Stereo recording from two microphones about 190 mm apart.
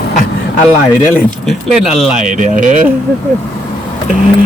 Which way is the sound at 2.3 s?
45° right (ahead or behind).